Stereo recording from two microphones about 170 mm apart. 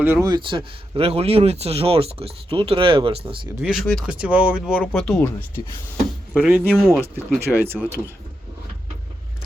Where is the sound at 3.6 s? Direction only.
Centre (ahead or behind).